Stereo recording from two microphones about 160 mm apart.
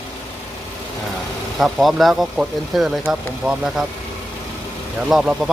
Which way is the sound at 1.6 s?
Centre (ahead or behind).